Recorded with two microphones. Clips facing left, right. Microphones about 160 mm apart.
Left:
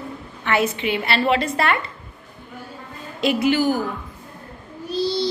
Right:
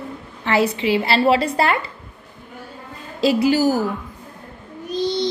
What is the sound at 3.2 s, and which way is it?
Speech, 35° right (ahead or behind).